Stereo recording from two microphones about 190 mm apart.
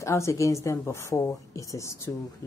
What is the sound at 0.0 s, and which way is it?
Speech, 15° left (ahead or behind).